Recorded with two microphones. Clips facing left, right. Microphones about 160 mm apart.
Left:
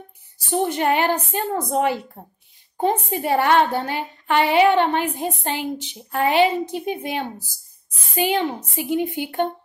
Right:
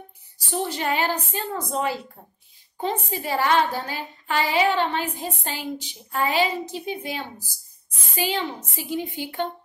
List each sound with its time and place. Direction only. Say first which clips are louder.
0.5 s a woman's voice: left 6 dB; 55° left (ahead or behind)